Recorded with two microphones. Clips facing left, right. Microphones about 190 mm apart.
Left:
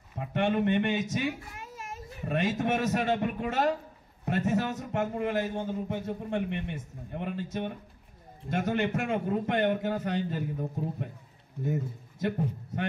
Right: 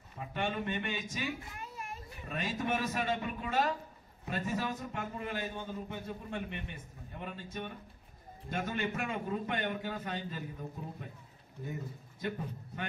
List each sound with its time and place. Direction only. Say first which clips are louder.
0.2 s a man's voice: left 9 dB; 70° left (ahead or behind)
5.0 s a man's voice: left 11 dB; 65° left (ahead or behind)
11.7 s a man's voice: left 8 dB; 75° left (ahead or behind)